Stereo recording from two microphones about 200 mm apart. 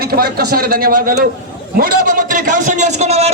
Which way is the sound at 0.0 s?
50° right (ahead or behind).